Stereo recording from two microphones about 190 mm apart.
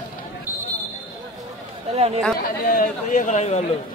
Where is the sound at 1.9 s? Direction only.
35° right (ahead or behind).